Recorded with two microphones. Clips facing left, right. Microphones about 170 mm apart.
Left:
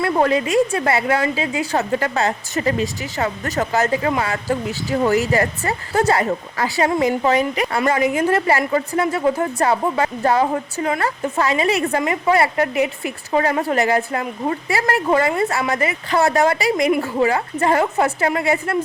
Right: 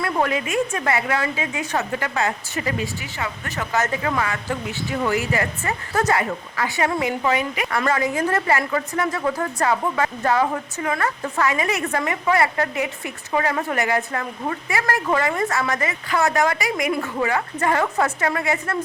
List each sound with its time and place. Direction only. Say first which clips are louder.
0.0 s speech: left 5 dB; 30° left (ahead or behind)
7.9 s a woman's voice: left 4 dB; 20° left (ahead or behind)
13.3 s a woman's voice: left 4 dB; 35° left (ahead or behind)